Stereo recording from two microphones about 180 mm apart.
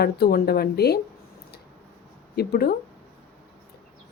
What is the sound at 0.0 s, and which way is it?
Speech, 60° left (ahead or behind).